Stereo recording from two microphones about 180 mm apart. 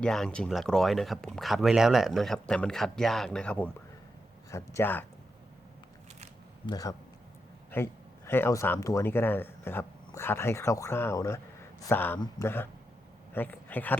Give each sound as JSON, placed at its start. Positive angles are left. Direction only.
{"t": 0.0, "sound": "speech", "side_deg": 5}
{"t": 6.7, "sound": "a man's voice", "side_deg": 20}